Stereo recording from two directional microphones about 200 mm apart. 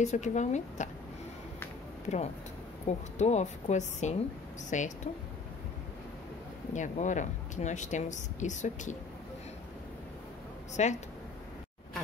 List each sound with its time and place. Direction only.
0.0 s speech: 35° left (ahead or behind)
2.1 s speech: 40° left (ahead or behind)
6.7 s speech: 35° left (ahead or behind)
10.8 s speech: 35° left (ahead or behind)